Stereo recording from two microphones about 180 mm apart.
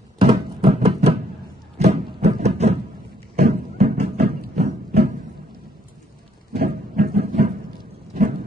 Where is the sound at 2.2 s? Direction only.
35° right (ahead or behind).